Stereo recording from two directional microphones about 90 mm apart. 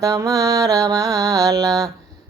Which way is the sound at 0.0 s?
35° right (ahead or behind).